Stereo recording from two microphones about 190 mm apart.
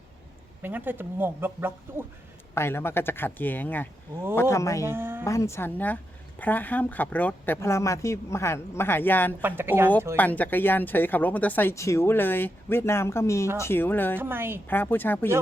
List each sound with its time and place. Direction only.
0.6 s speech: 10° right (ahead or behind)
2.6 s speech: 10° left (ahead or behind)
4.9 s speech: 10° right (ahead or behind)
5.2 s speech: 15° left (ahead or behind)
9.4 s speech: 10° right (ahead or behind)
10.2 s speech: 10° left (ahead or behind)
14.2 s speech: 10° right (ahead or behind)
14.7 s speech: 10° left (ahead or behind)